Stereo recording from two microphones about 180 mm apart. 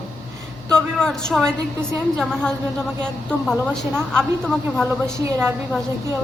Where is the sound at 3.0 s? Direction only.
5° left (ahead or behind).